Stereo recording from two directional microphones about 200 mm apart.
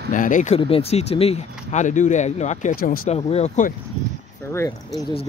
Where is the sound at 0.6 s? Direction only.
30° left (ahead or behind); by 3.0 s 45° left (ahead or behind).